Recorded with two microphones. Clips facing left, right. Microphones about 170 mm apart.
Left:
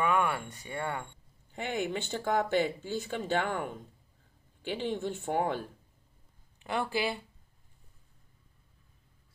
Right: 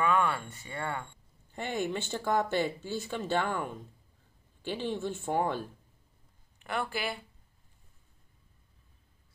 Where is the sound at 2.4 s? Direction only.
15° left (ahead or behind).